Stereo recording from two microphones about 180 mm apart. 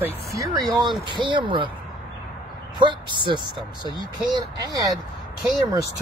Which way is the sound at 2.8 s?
25° right (ahead or behind).